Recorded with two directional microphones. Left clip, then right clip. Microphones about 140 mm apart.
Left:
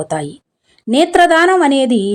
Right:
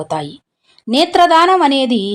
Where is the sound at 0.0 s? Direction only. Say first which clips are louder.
Left 1 dB; 35° left (ahead or behind).